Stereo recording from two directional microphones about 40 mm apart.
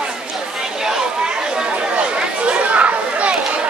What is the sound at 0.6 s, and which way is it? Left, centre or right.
Chatter, centre.